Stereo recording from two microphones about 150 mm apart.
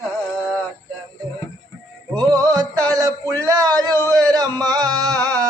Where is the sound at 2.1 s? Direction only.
25° right (ahead or behind).